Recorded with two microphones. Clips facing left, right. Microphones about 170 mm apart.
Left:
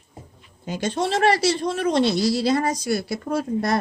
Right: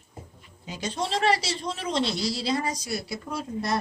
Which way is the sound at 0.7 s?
60° left (ahead or behind).